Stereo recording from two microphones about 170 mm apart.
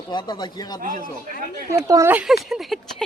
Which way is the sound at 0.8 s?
50° right (ahead or behind).